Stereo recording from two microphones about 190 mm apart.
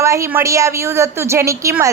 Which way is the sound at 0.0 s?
15° right (ahead or behind).